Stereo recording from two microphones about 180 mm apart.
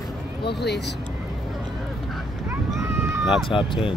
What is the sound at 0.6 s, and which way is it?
Speech, 70° left (ahead or behind).